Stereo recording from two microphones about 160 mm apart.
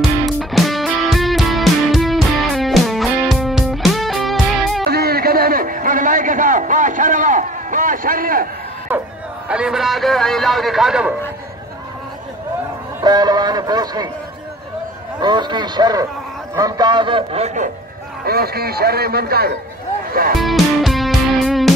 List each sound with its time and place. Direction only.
0.4 s music: centre (ahead or behind)
4.8 s a sound: 75° right (ahead or behind)
9.5 s a man's voice: 5° right (ahead or behind)
13.0 s speech: 25° right (ahead or behind)
15.1 s speech: 30° right (ahead or behind)
18.2 s a man's voice: 75° right (ahead or behind)
20.3 s music: centre (ahead or behind)